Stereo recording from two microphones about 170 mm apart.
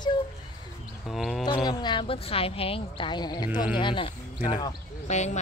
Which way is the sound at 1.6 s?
25° left (ahead or behind).